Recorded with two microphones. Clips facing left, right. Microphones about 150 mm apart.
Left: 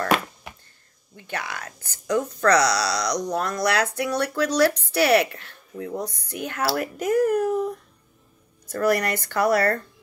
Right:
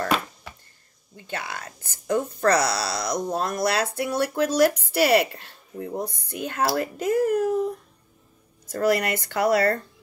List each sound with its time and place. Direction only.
1.1 s speech: 25° right (ahead or behind)
8.6 s speech: 25° right (ahead or behind)